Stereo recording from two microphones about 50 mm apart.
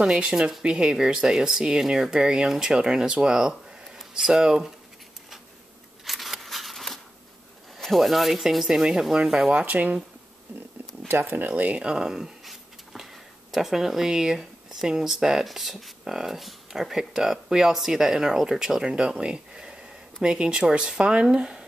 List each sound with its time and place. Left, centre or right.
0.0 s speech: centre
6.0 s scissors: centre
7.8 s speech: centre
9.5 s speech: right
11.1 s speech: right
11.9 s speech: centre